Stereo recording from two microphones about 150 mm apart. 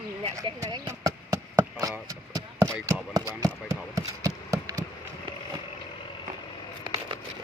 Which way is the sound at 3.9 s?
25° right (ahead or behind).